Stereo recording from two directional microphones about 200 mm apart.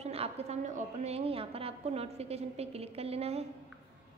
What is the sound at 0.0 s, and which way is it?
A woman's voice, 30° right (ahead or behind).